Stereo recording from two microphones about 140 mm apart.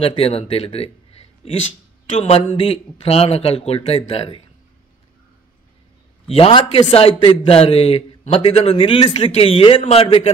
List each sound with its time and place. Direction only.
0.0 s a man's voice: 45° left (ahead or behind)
6.2 s a man's voice: 45° left (ahead or behind)